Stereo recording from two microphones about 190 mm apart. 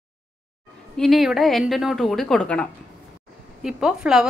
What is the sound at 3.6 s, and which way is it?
Speech, 5° right (ahead or behind).